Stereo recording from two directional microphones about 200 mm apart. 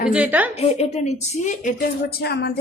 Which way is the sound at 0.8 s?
35° left (ahead or behind).